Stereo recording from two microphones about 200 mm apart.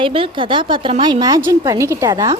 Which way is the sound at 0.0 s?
25° right (ahead or behind).